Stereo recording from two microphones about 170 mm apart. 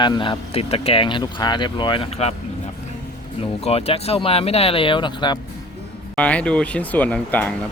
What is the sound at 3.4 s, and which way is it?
Speech, 35° left (ahead or behind).